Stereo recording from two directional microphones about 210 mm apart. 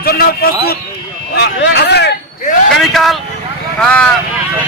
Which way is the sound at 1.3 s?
55° left (ahead or behind).